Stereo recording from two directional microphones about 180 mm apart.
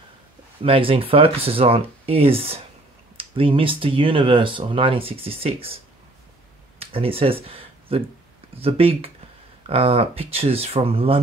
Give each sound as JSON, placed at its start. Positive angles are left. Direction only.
{"t": 0.6, "sound": "speech", "side_deg": -30}
{"t": 6.8, "sound": "speech", "side_deg": -30}
{"t": 7.4, "sound": "a sound", "side_deg": -30}
{"t": 8.5, "sound": "speech", "side_deg": -30}